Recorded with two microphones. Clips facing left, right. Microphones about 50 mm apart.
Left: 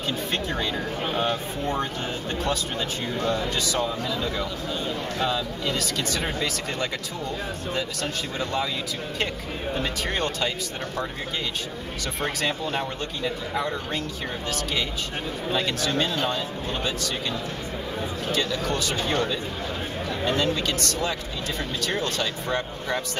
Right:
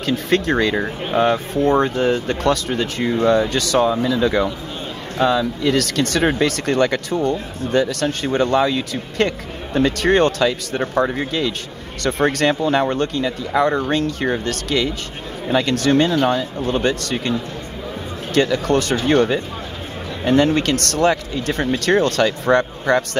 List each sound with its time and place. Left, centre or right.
0.0 s speech: right
1.1 s speech: right
12.0 s speech: right